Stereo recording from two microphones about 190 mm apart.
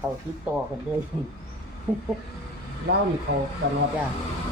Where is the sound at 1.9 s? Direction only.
10° right (ahead or behind).